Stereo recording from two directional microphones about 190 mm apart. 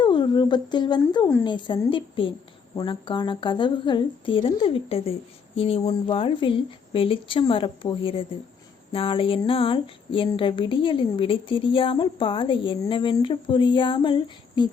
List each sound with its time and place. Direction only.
0.0 s speech: 25° left (ahead or behind)